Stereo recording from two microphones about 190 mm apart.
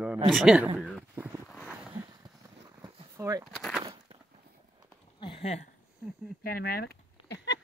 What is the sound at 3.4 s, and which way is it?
Speech, centre (ahead or behind).